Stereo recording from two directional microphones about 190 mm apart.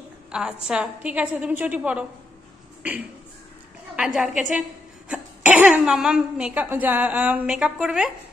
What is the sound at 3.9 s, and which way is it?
A woman's voice, 5° right (ahead or behind).